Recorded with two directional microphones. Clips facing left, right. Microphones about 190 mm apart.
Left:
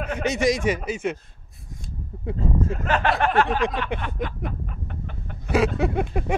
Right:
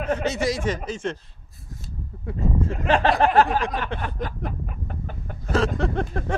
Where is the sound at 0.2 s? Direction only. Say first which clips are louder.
Left 2 dB; 15° left (ahead or behind).